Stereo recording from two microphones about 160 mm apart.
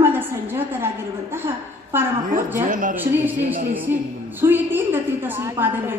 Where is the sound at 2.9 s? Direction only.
10° right (ahead or behind).